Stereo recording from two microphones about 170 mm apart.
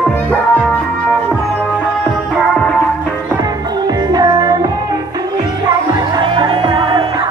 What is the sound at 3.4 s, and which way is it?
Music, 25° right (ahead or behind).